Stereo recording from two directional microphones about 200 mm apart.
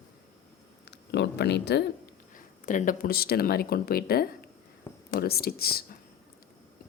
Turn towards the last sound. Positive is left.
turn(degrees=50)  # may be behind; listen again after turning